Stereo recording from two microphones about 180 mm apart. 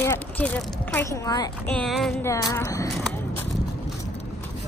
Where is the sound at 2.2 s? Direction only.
15° left (ahead or behind).